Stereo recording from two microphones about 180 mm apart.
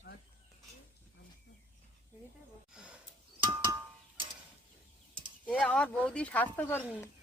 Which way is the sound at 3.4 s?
25° right (ahead or behind).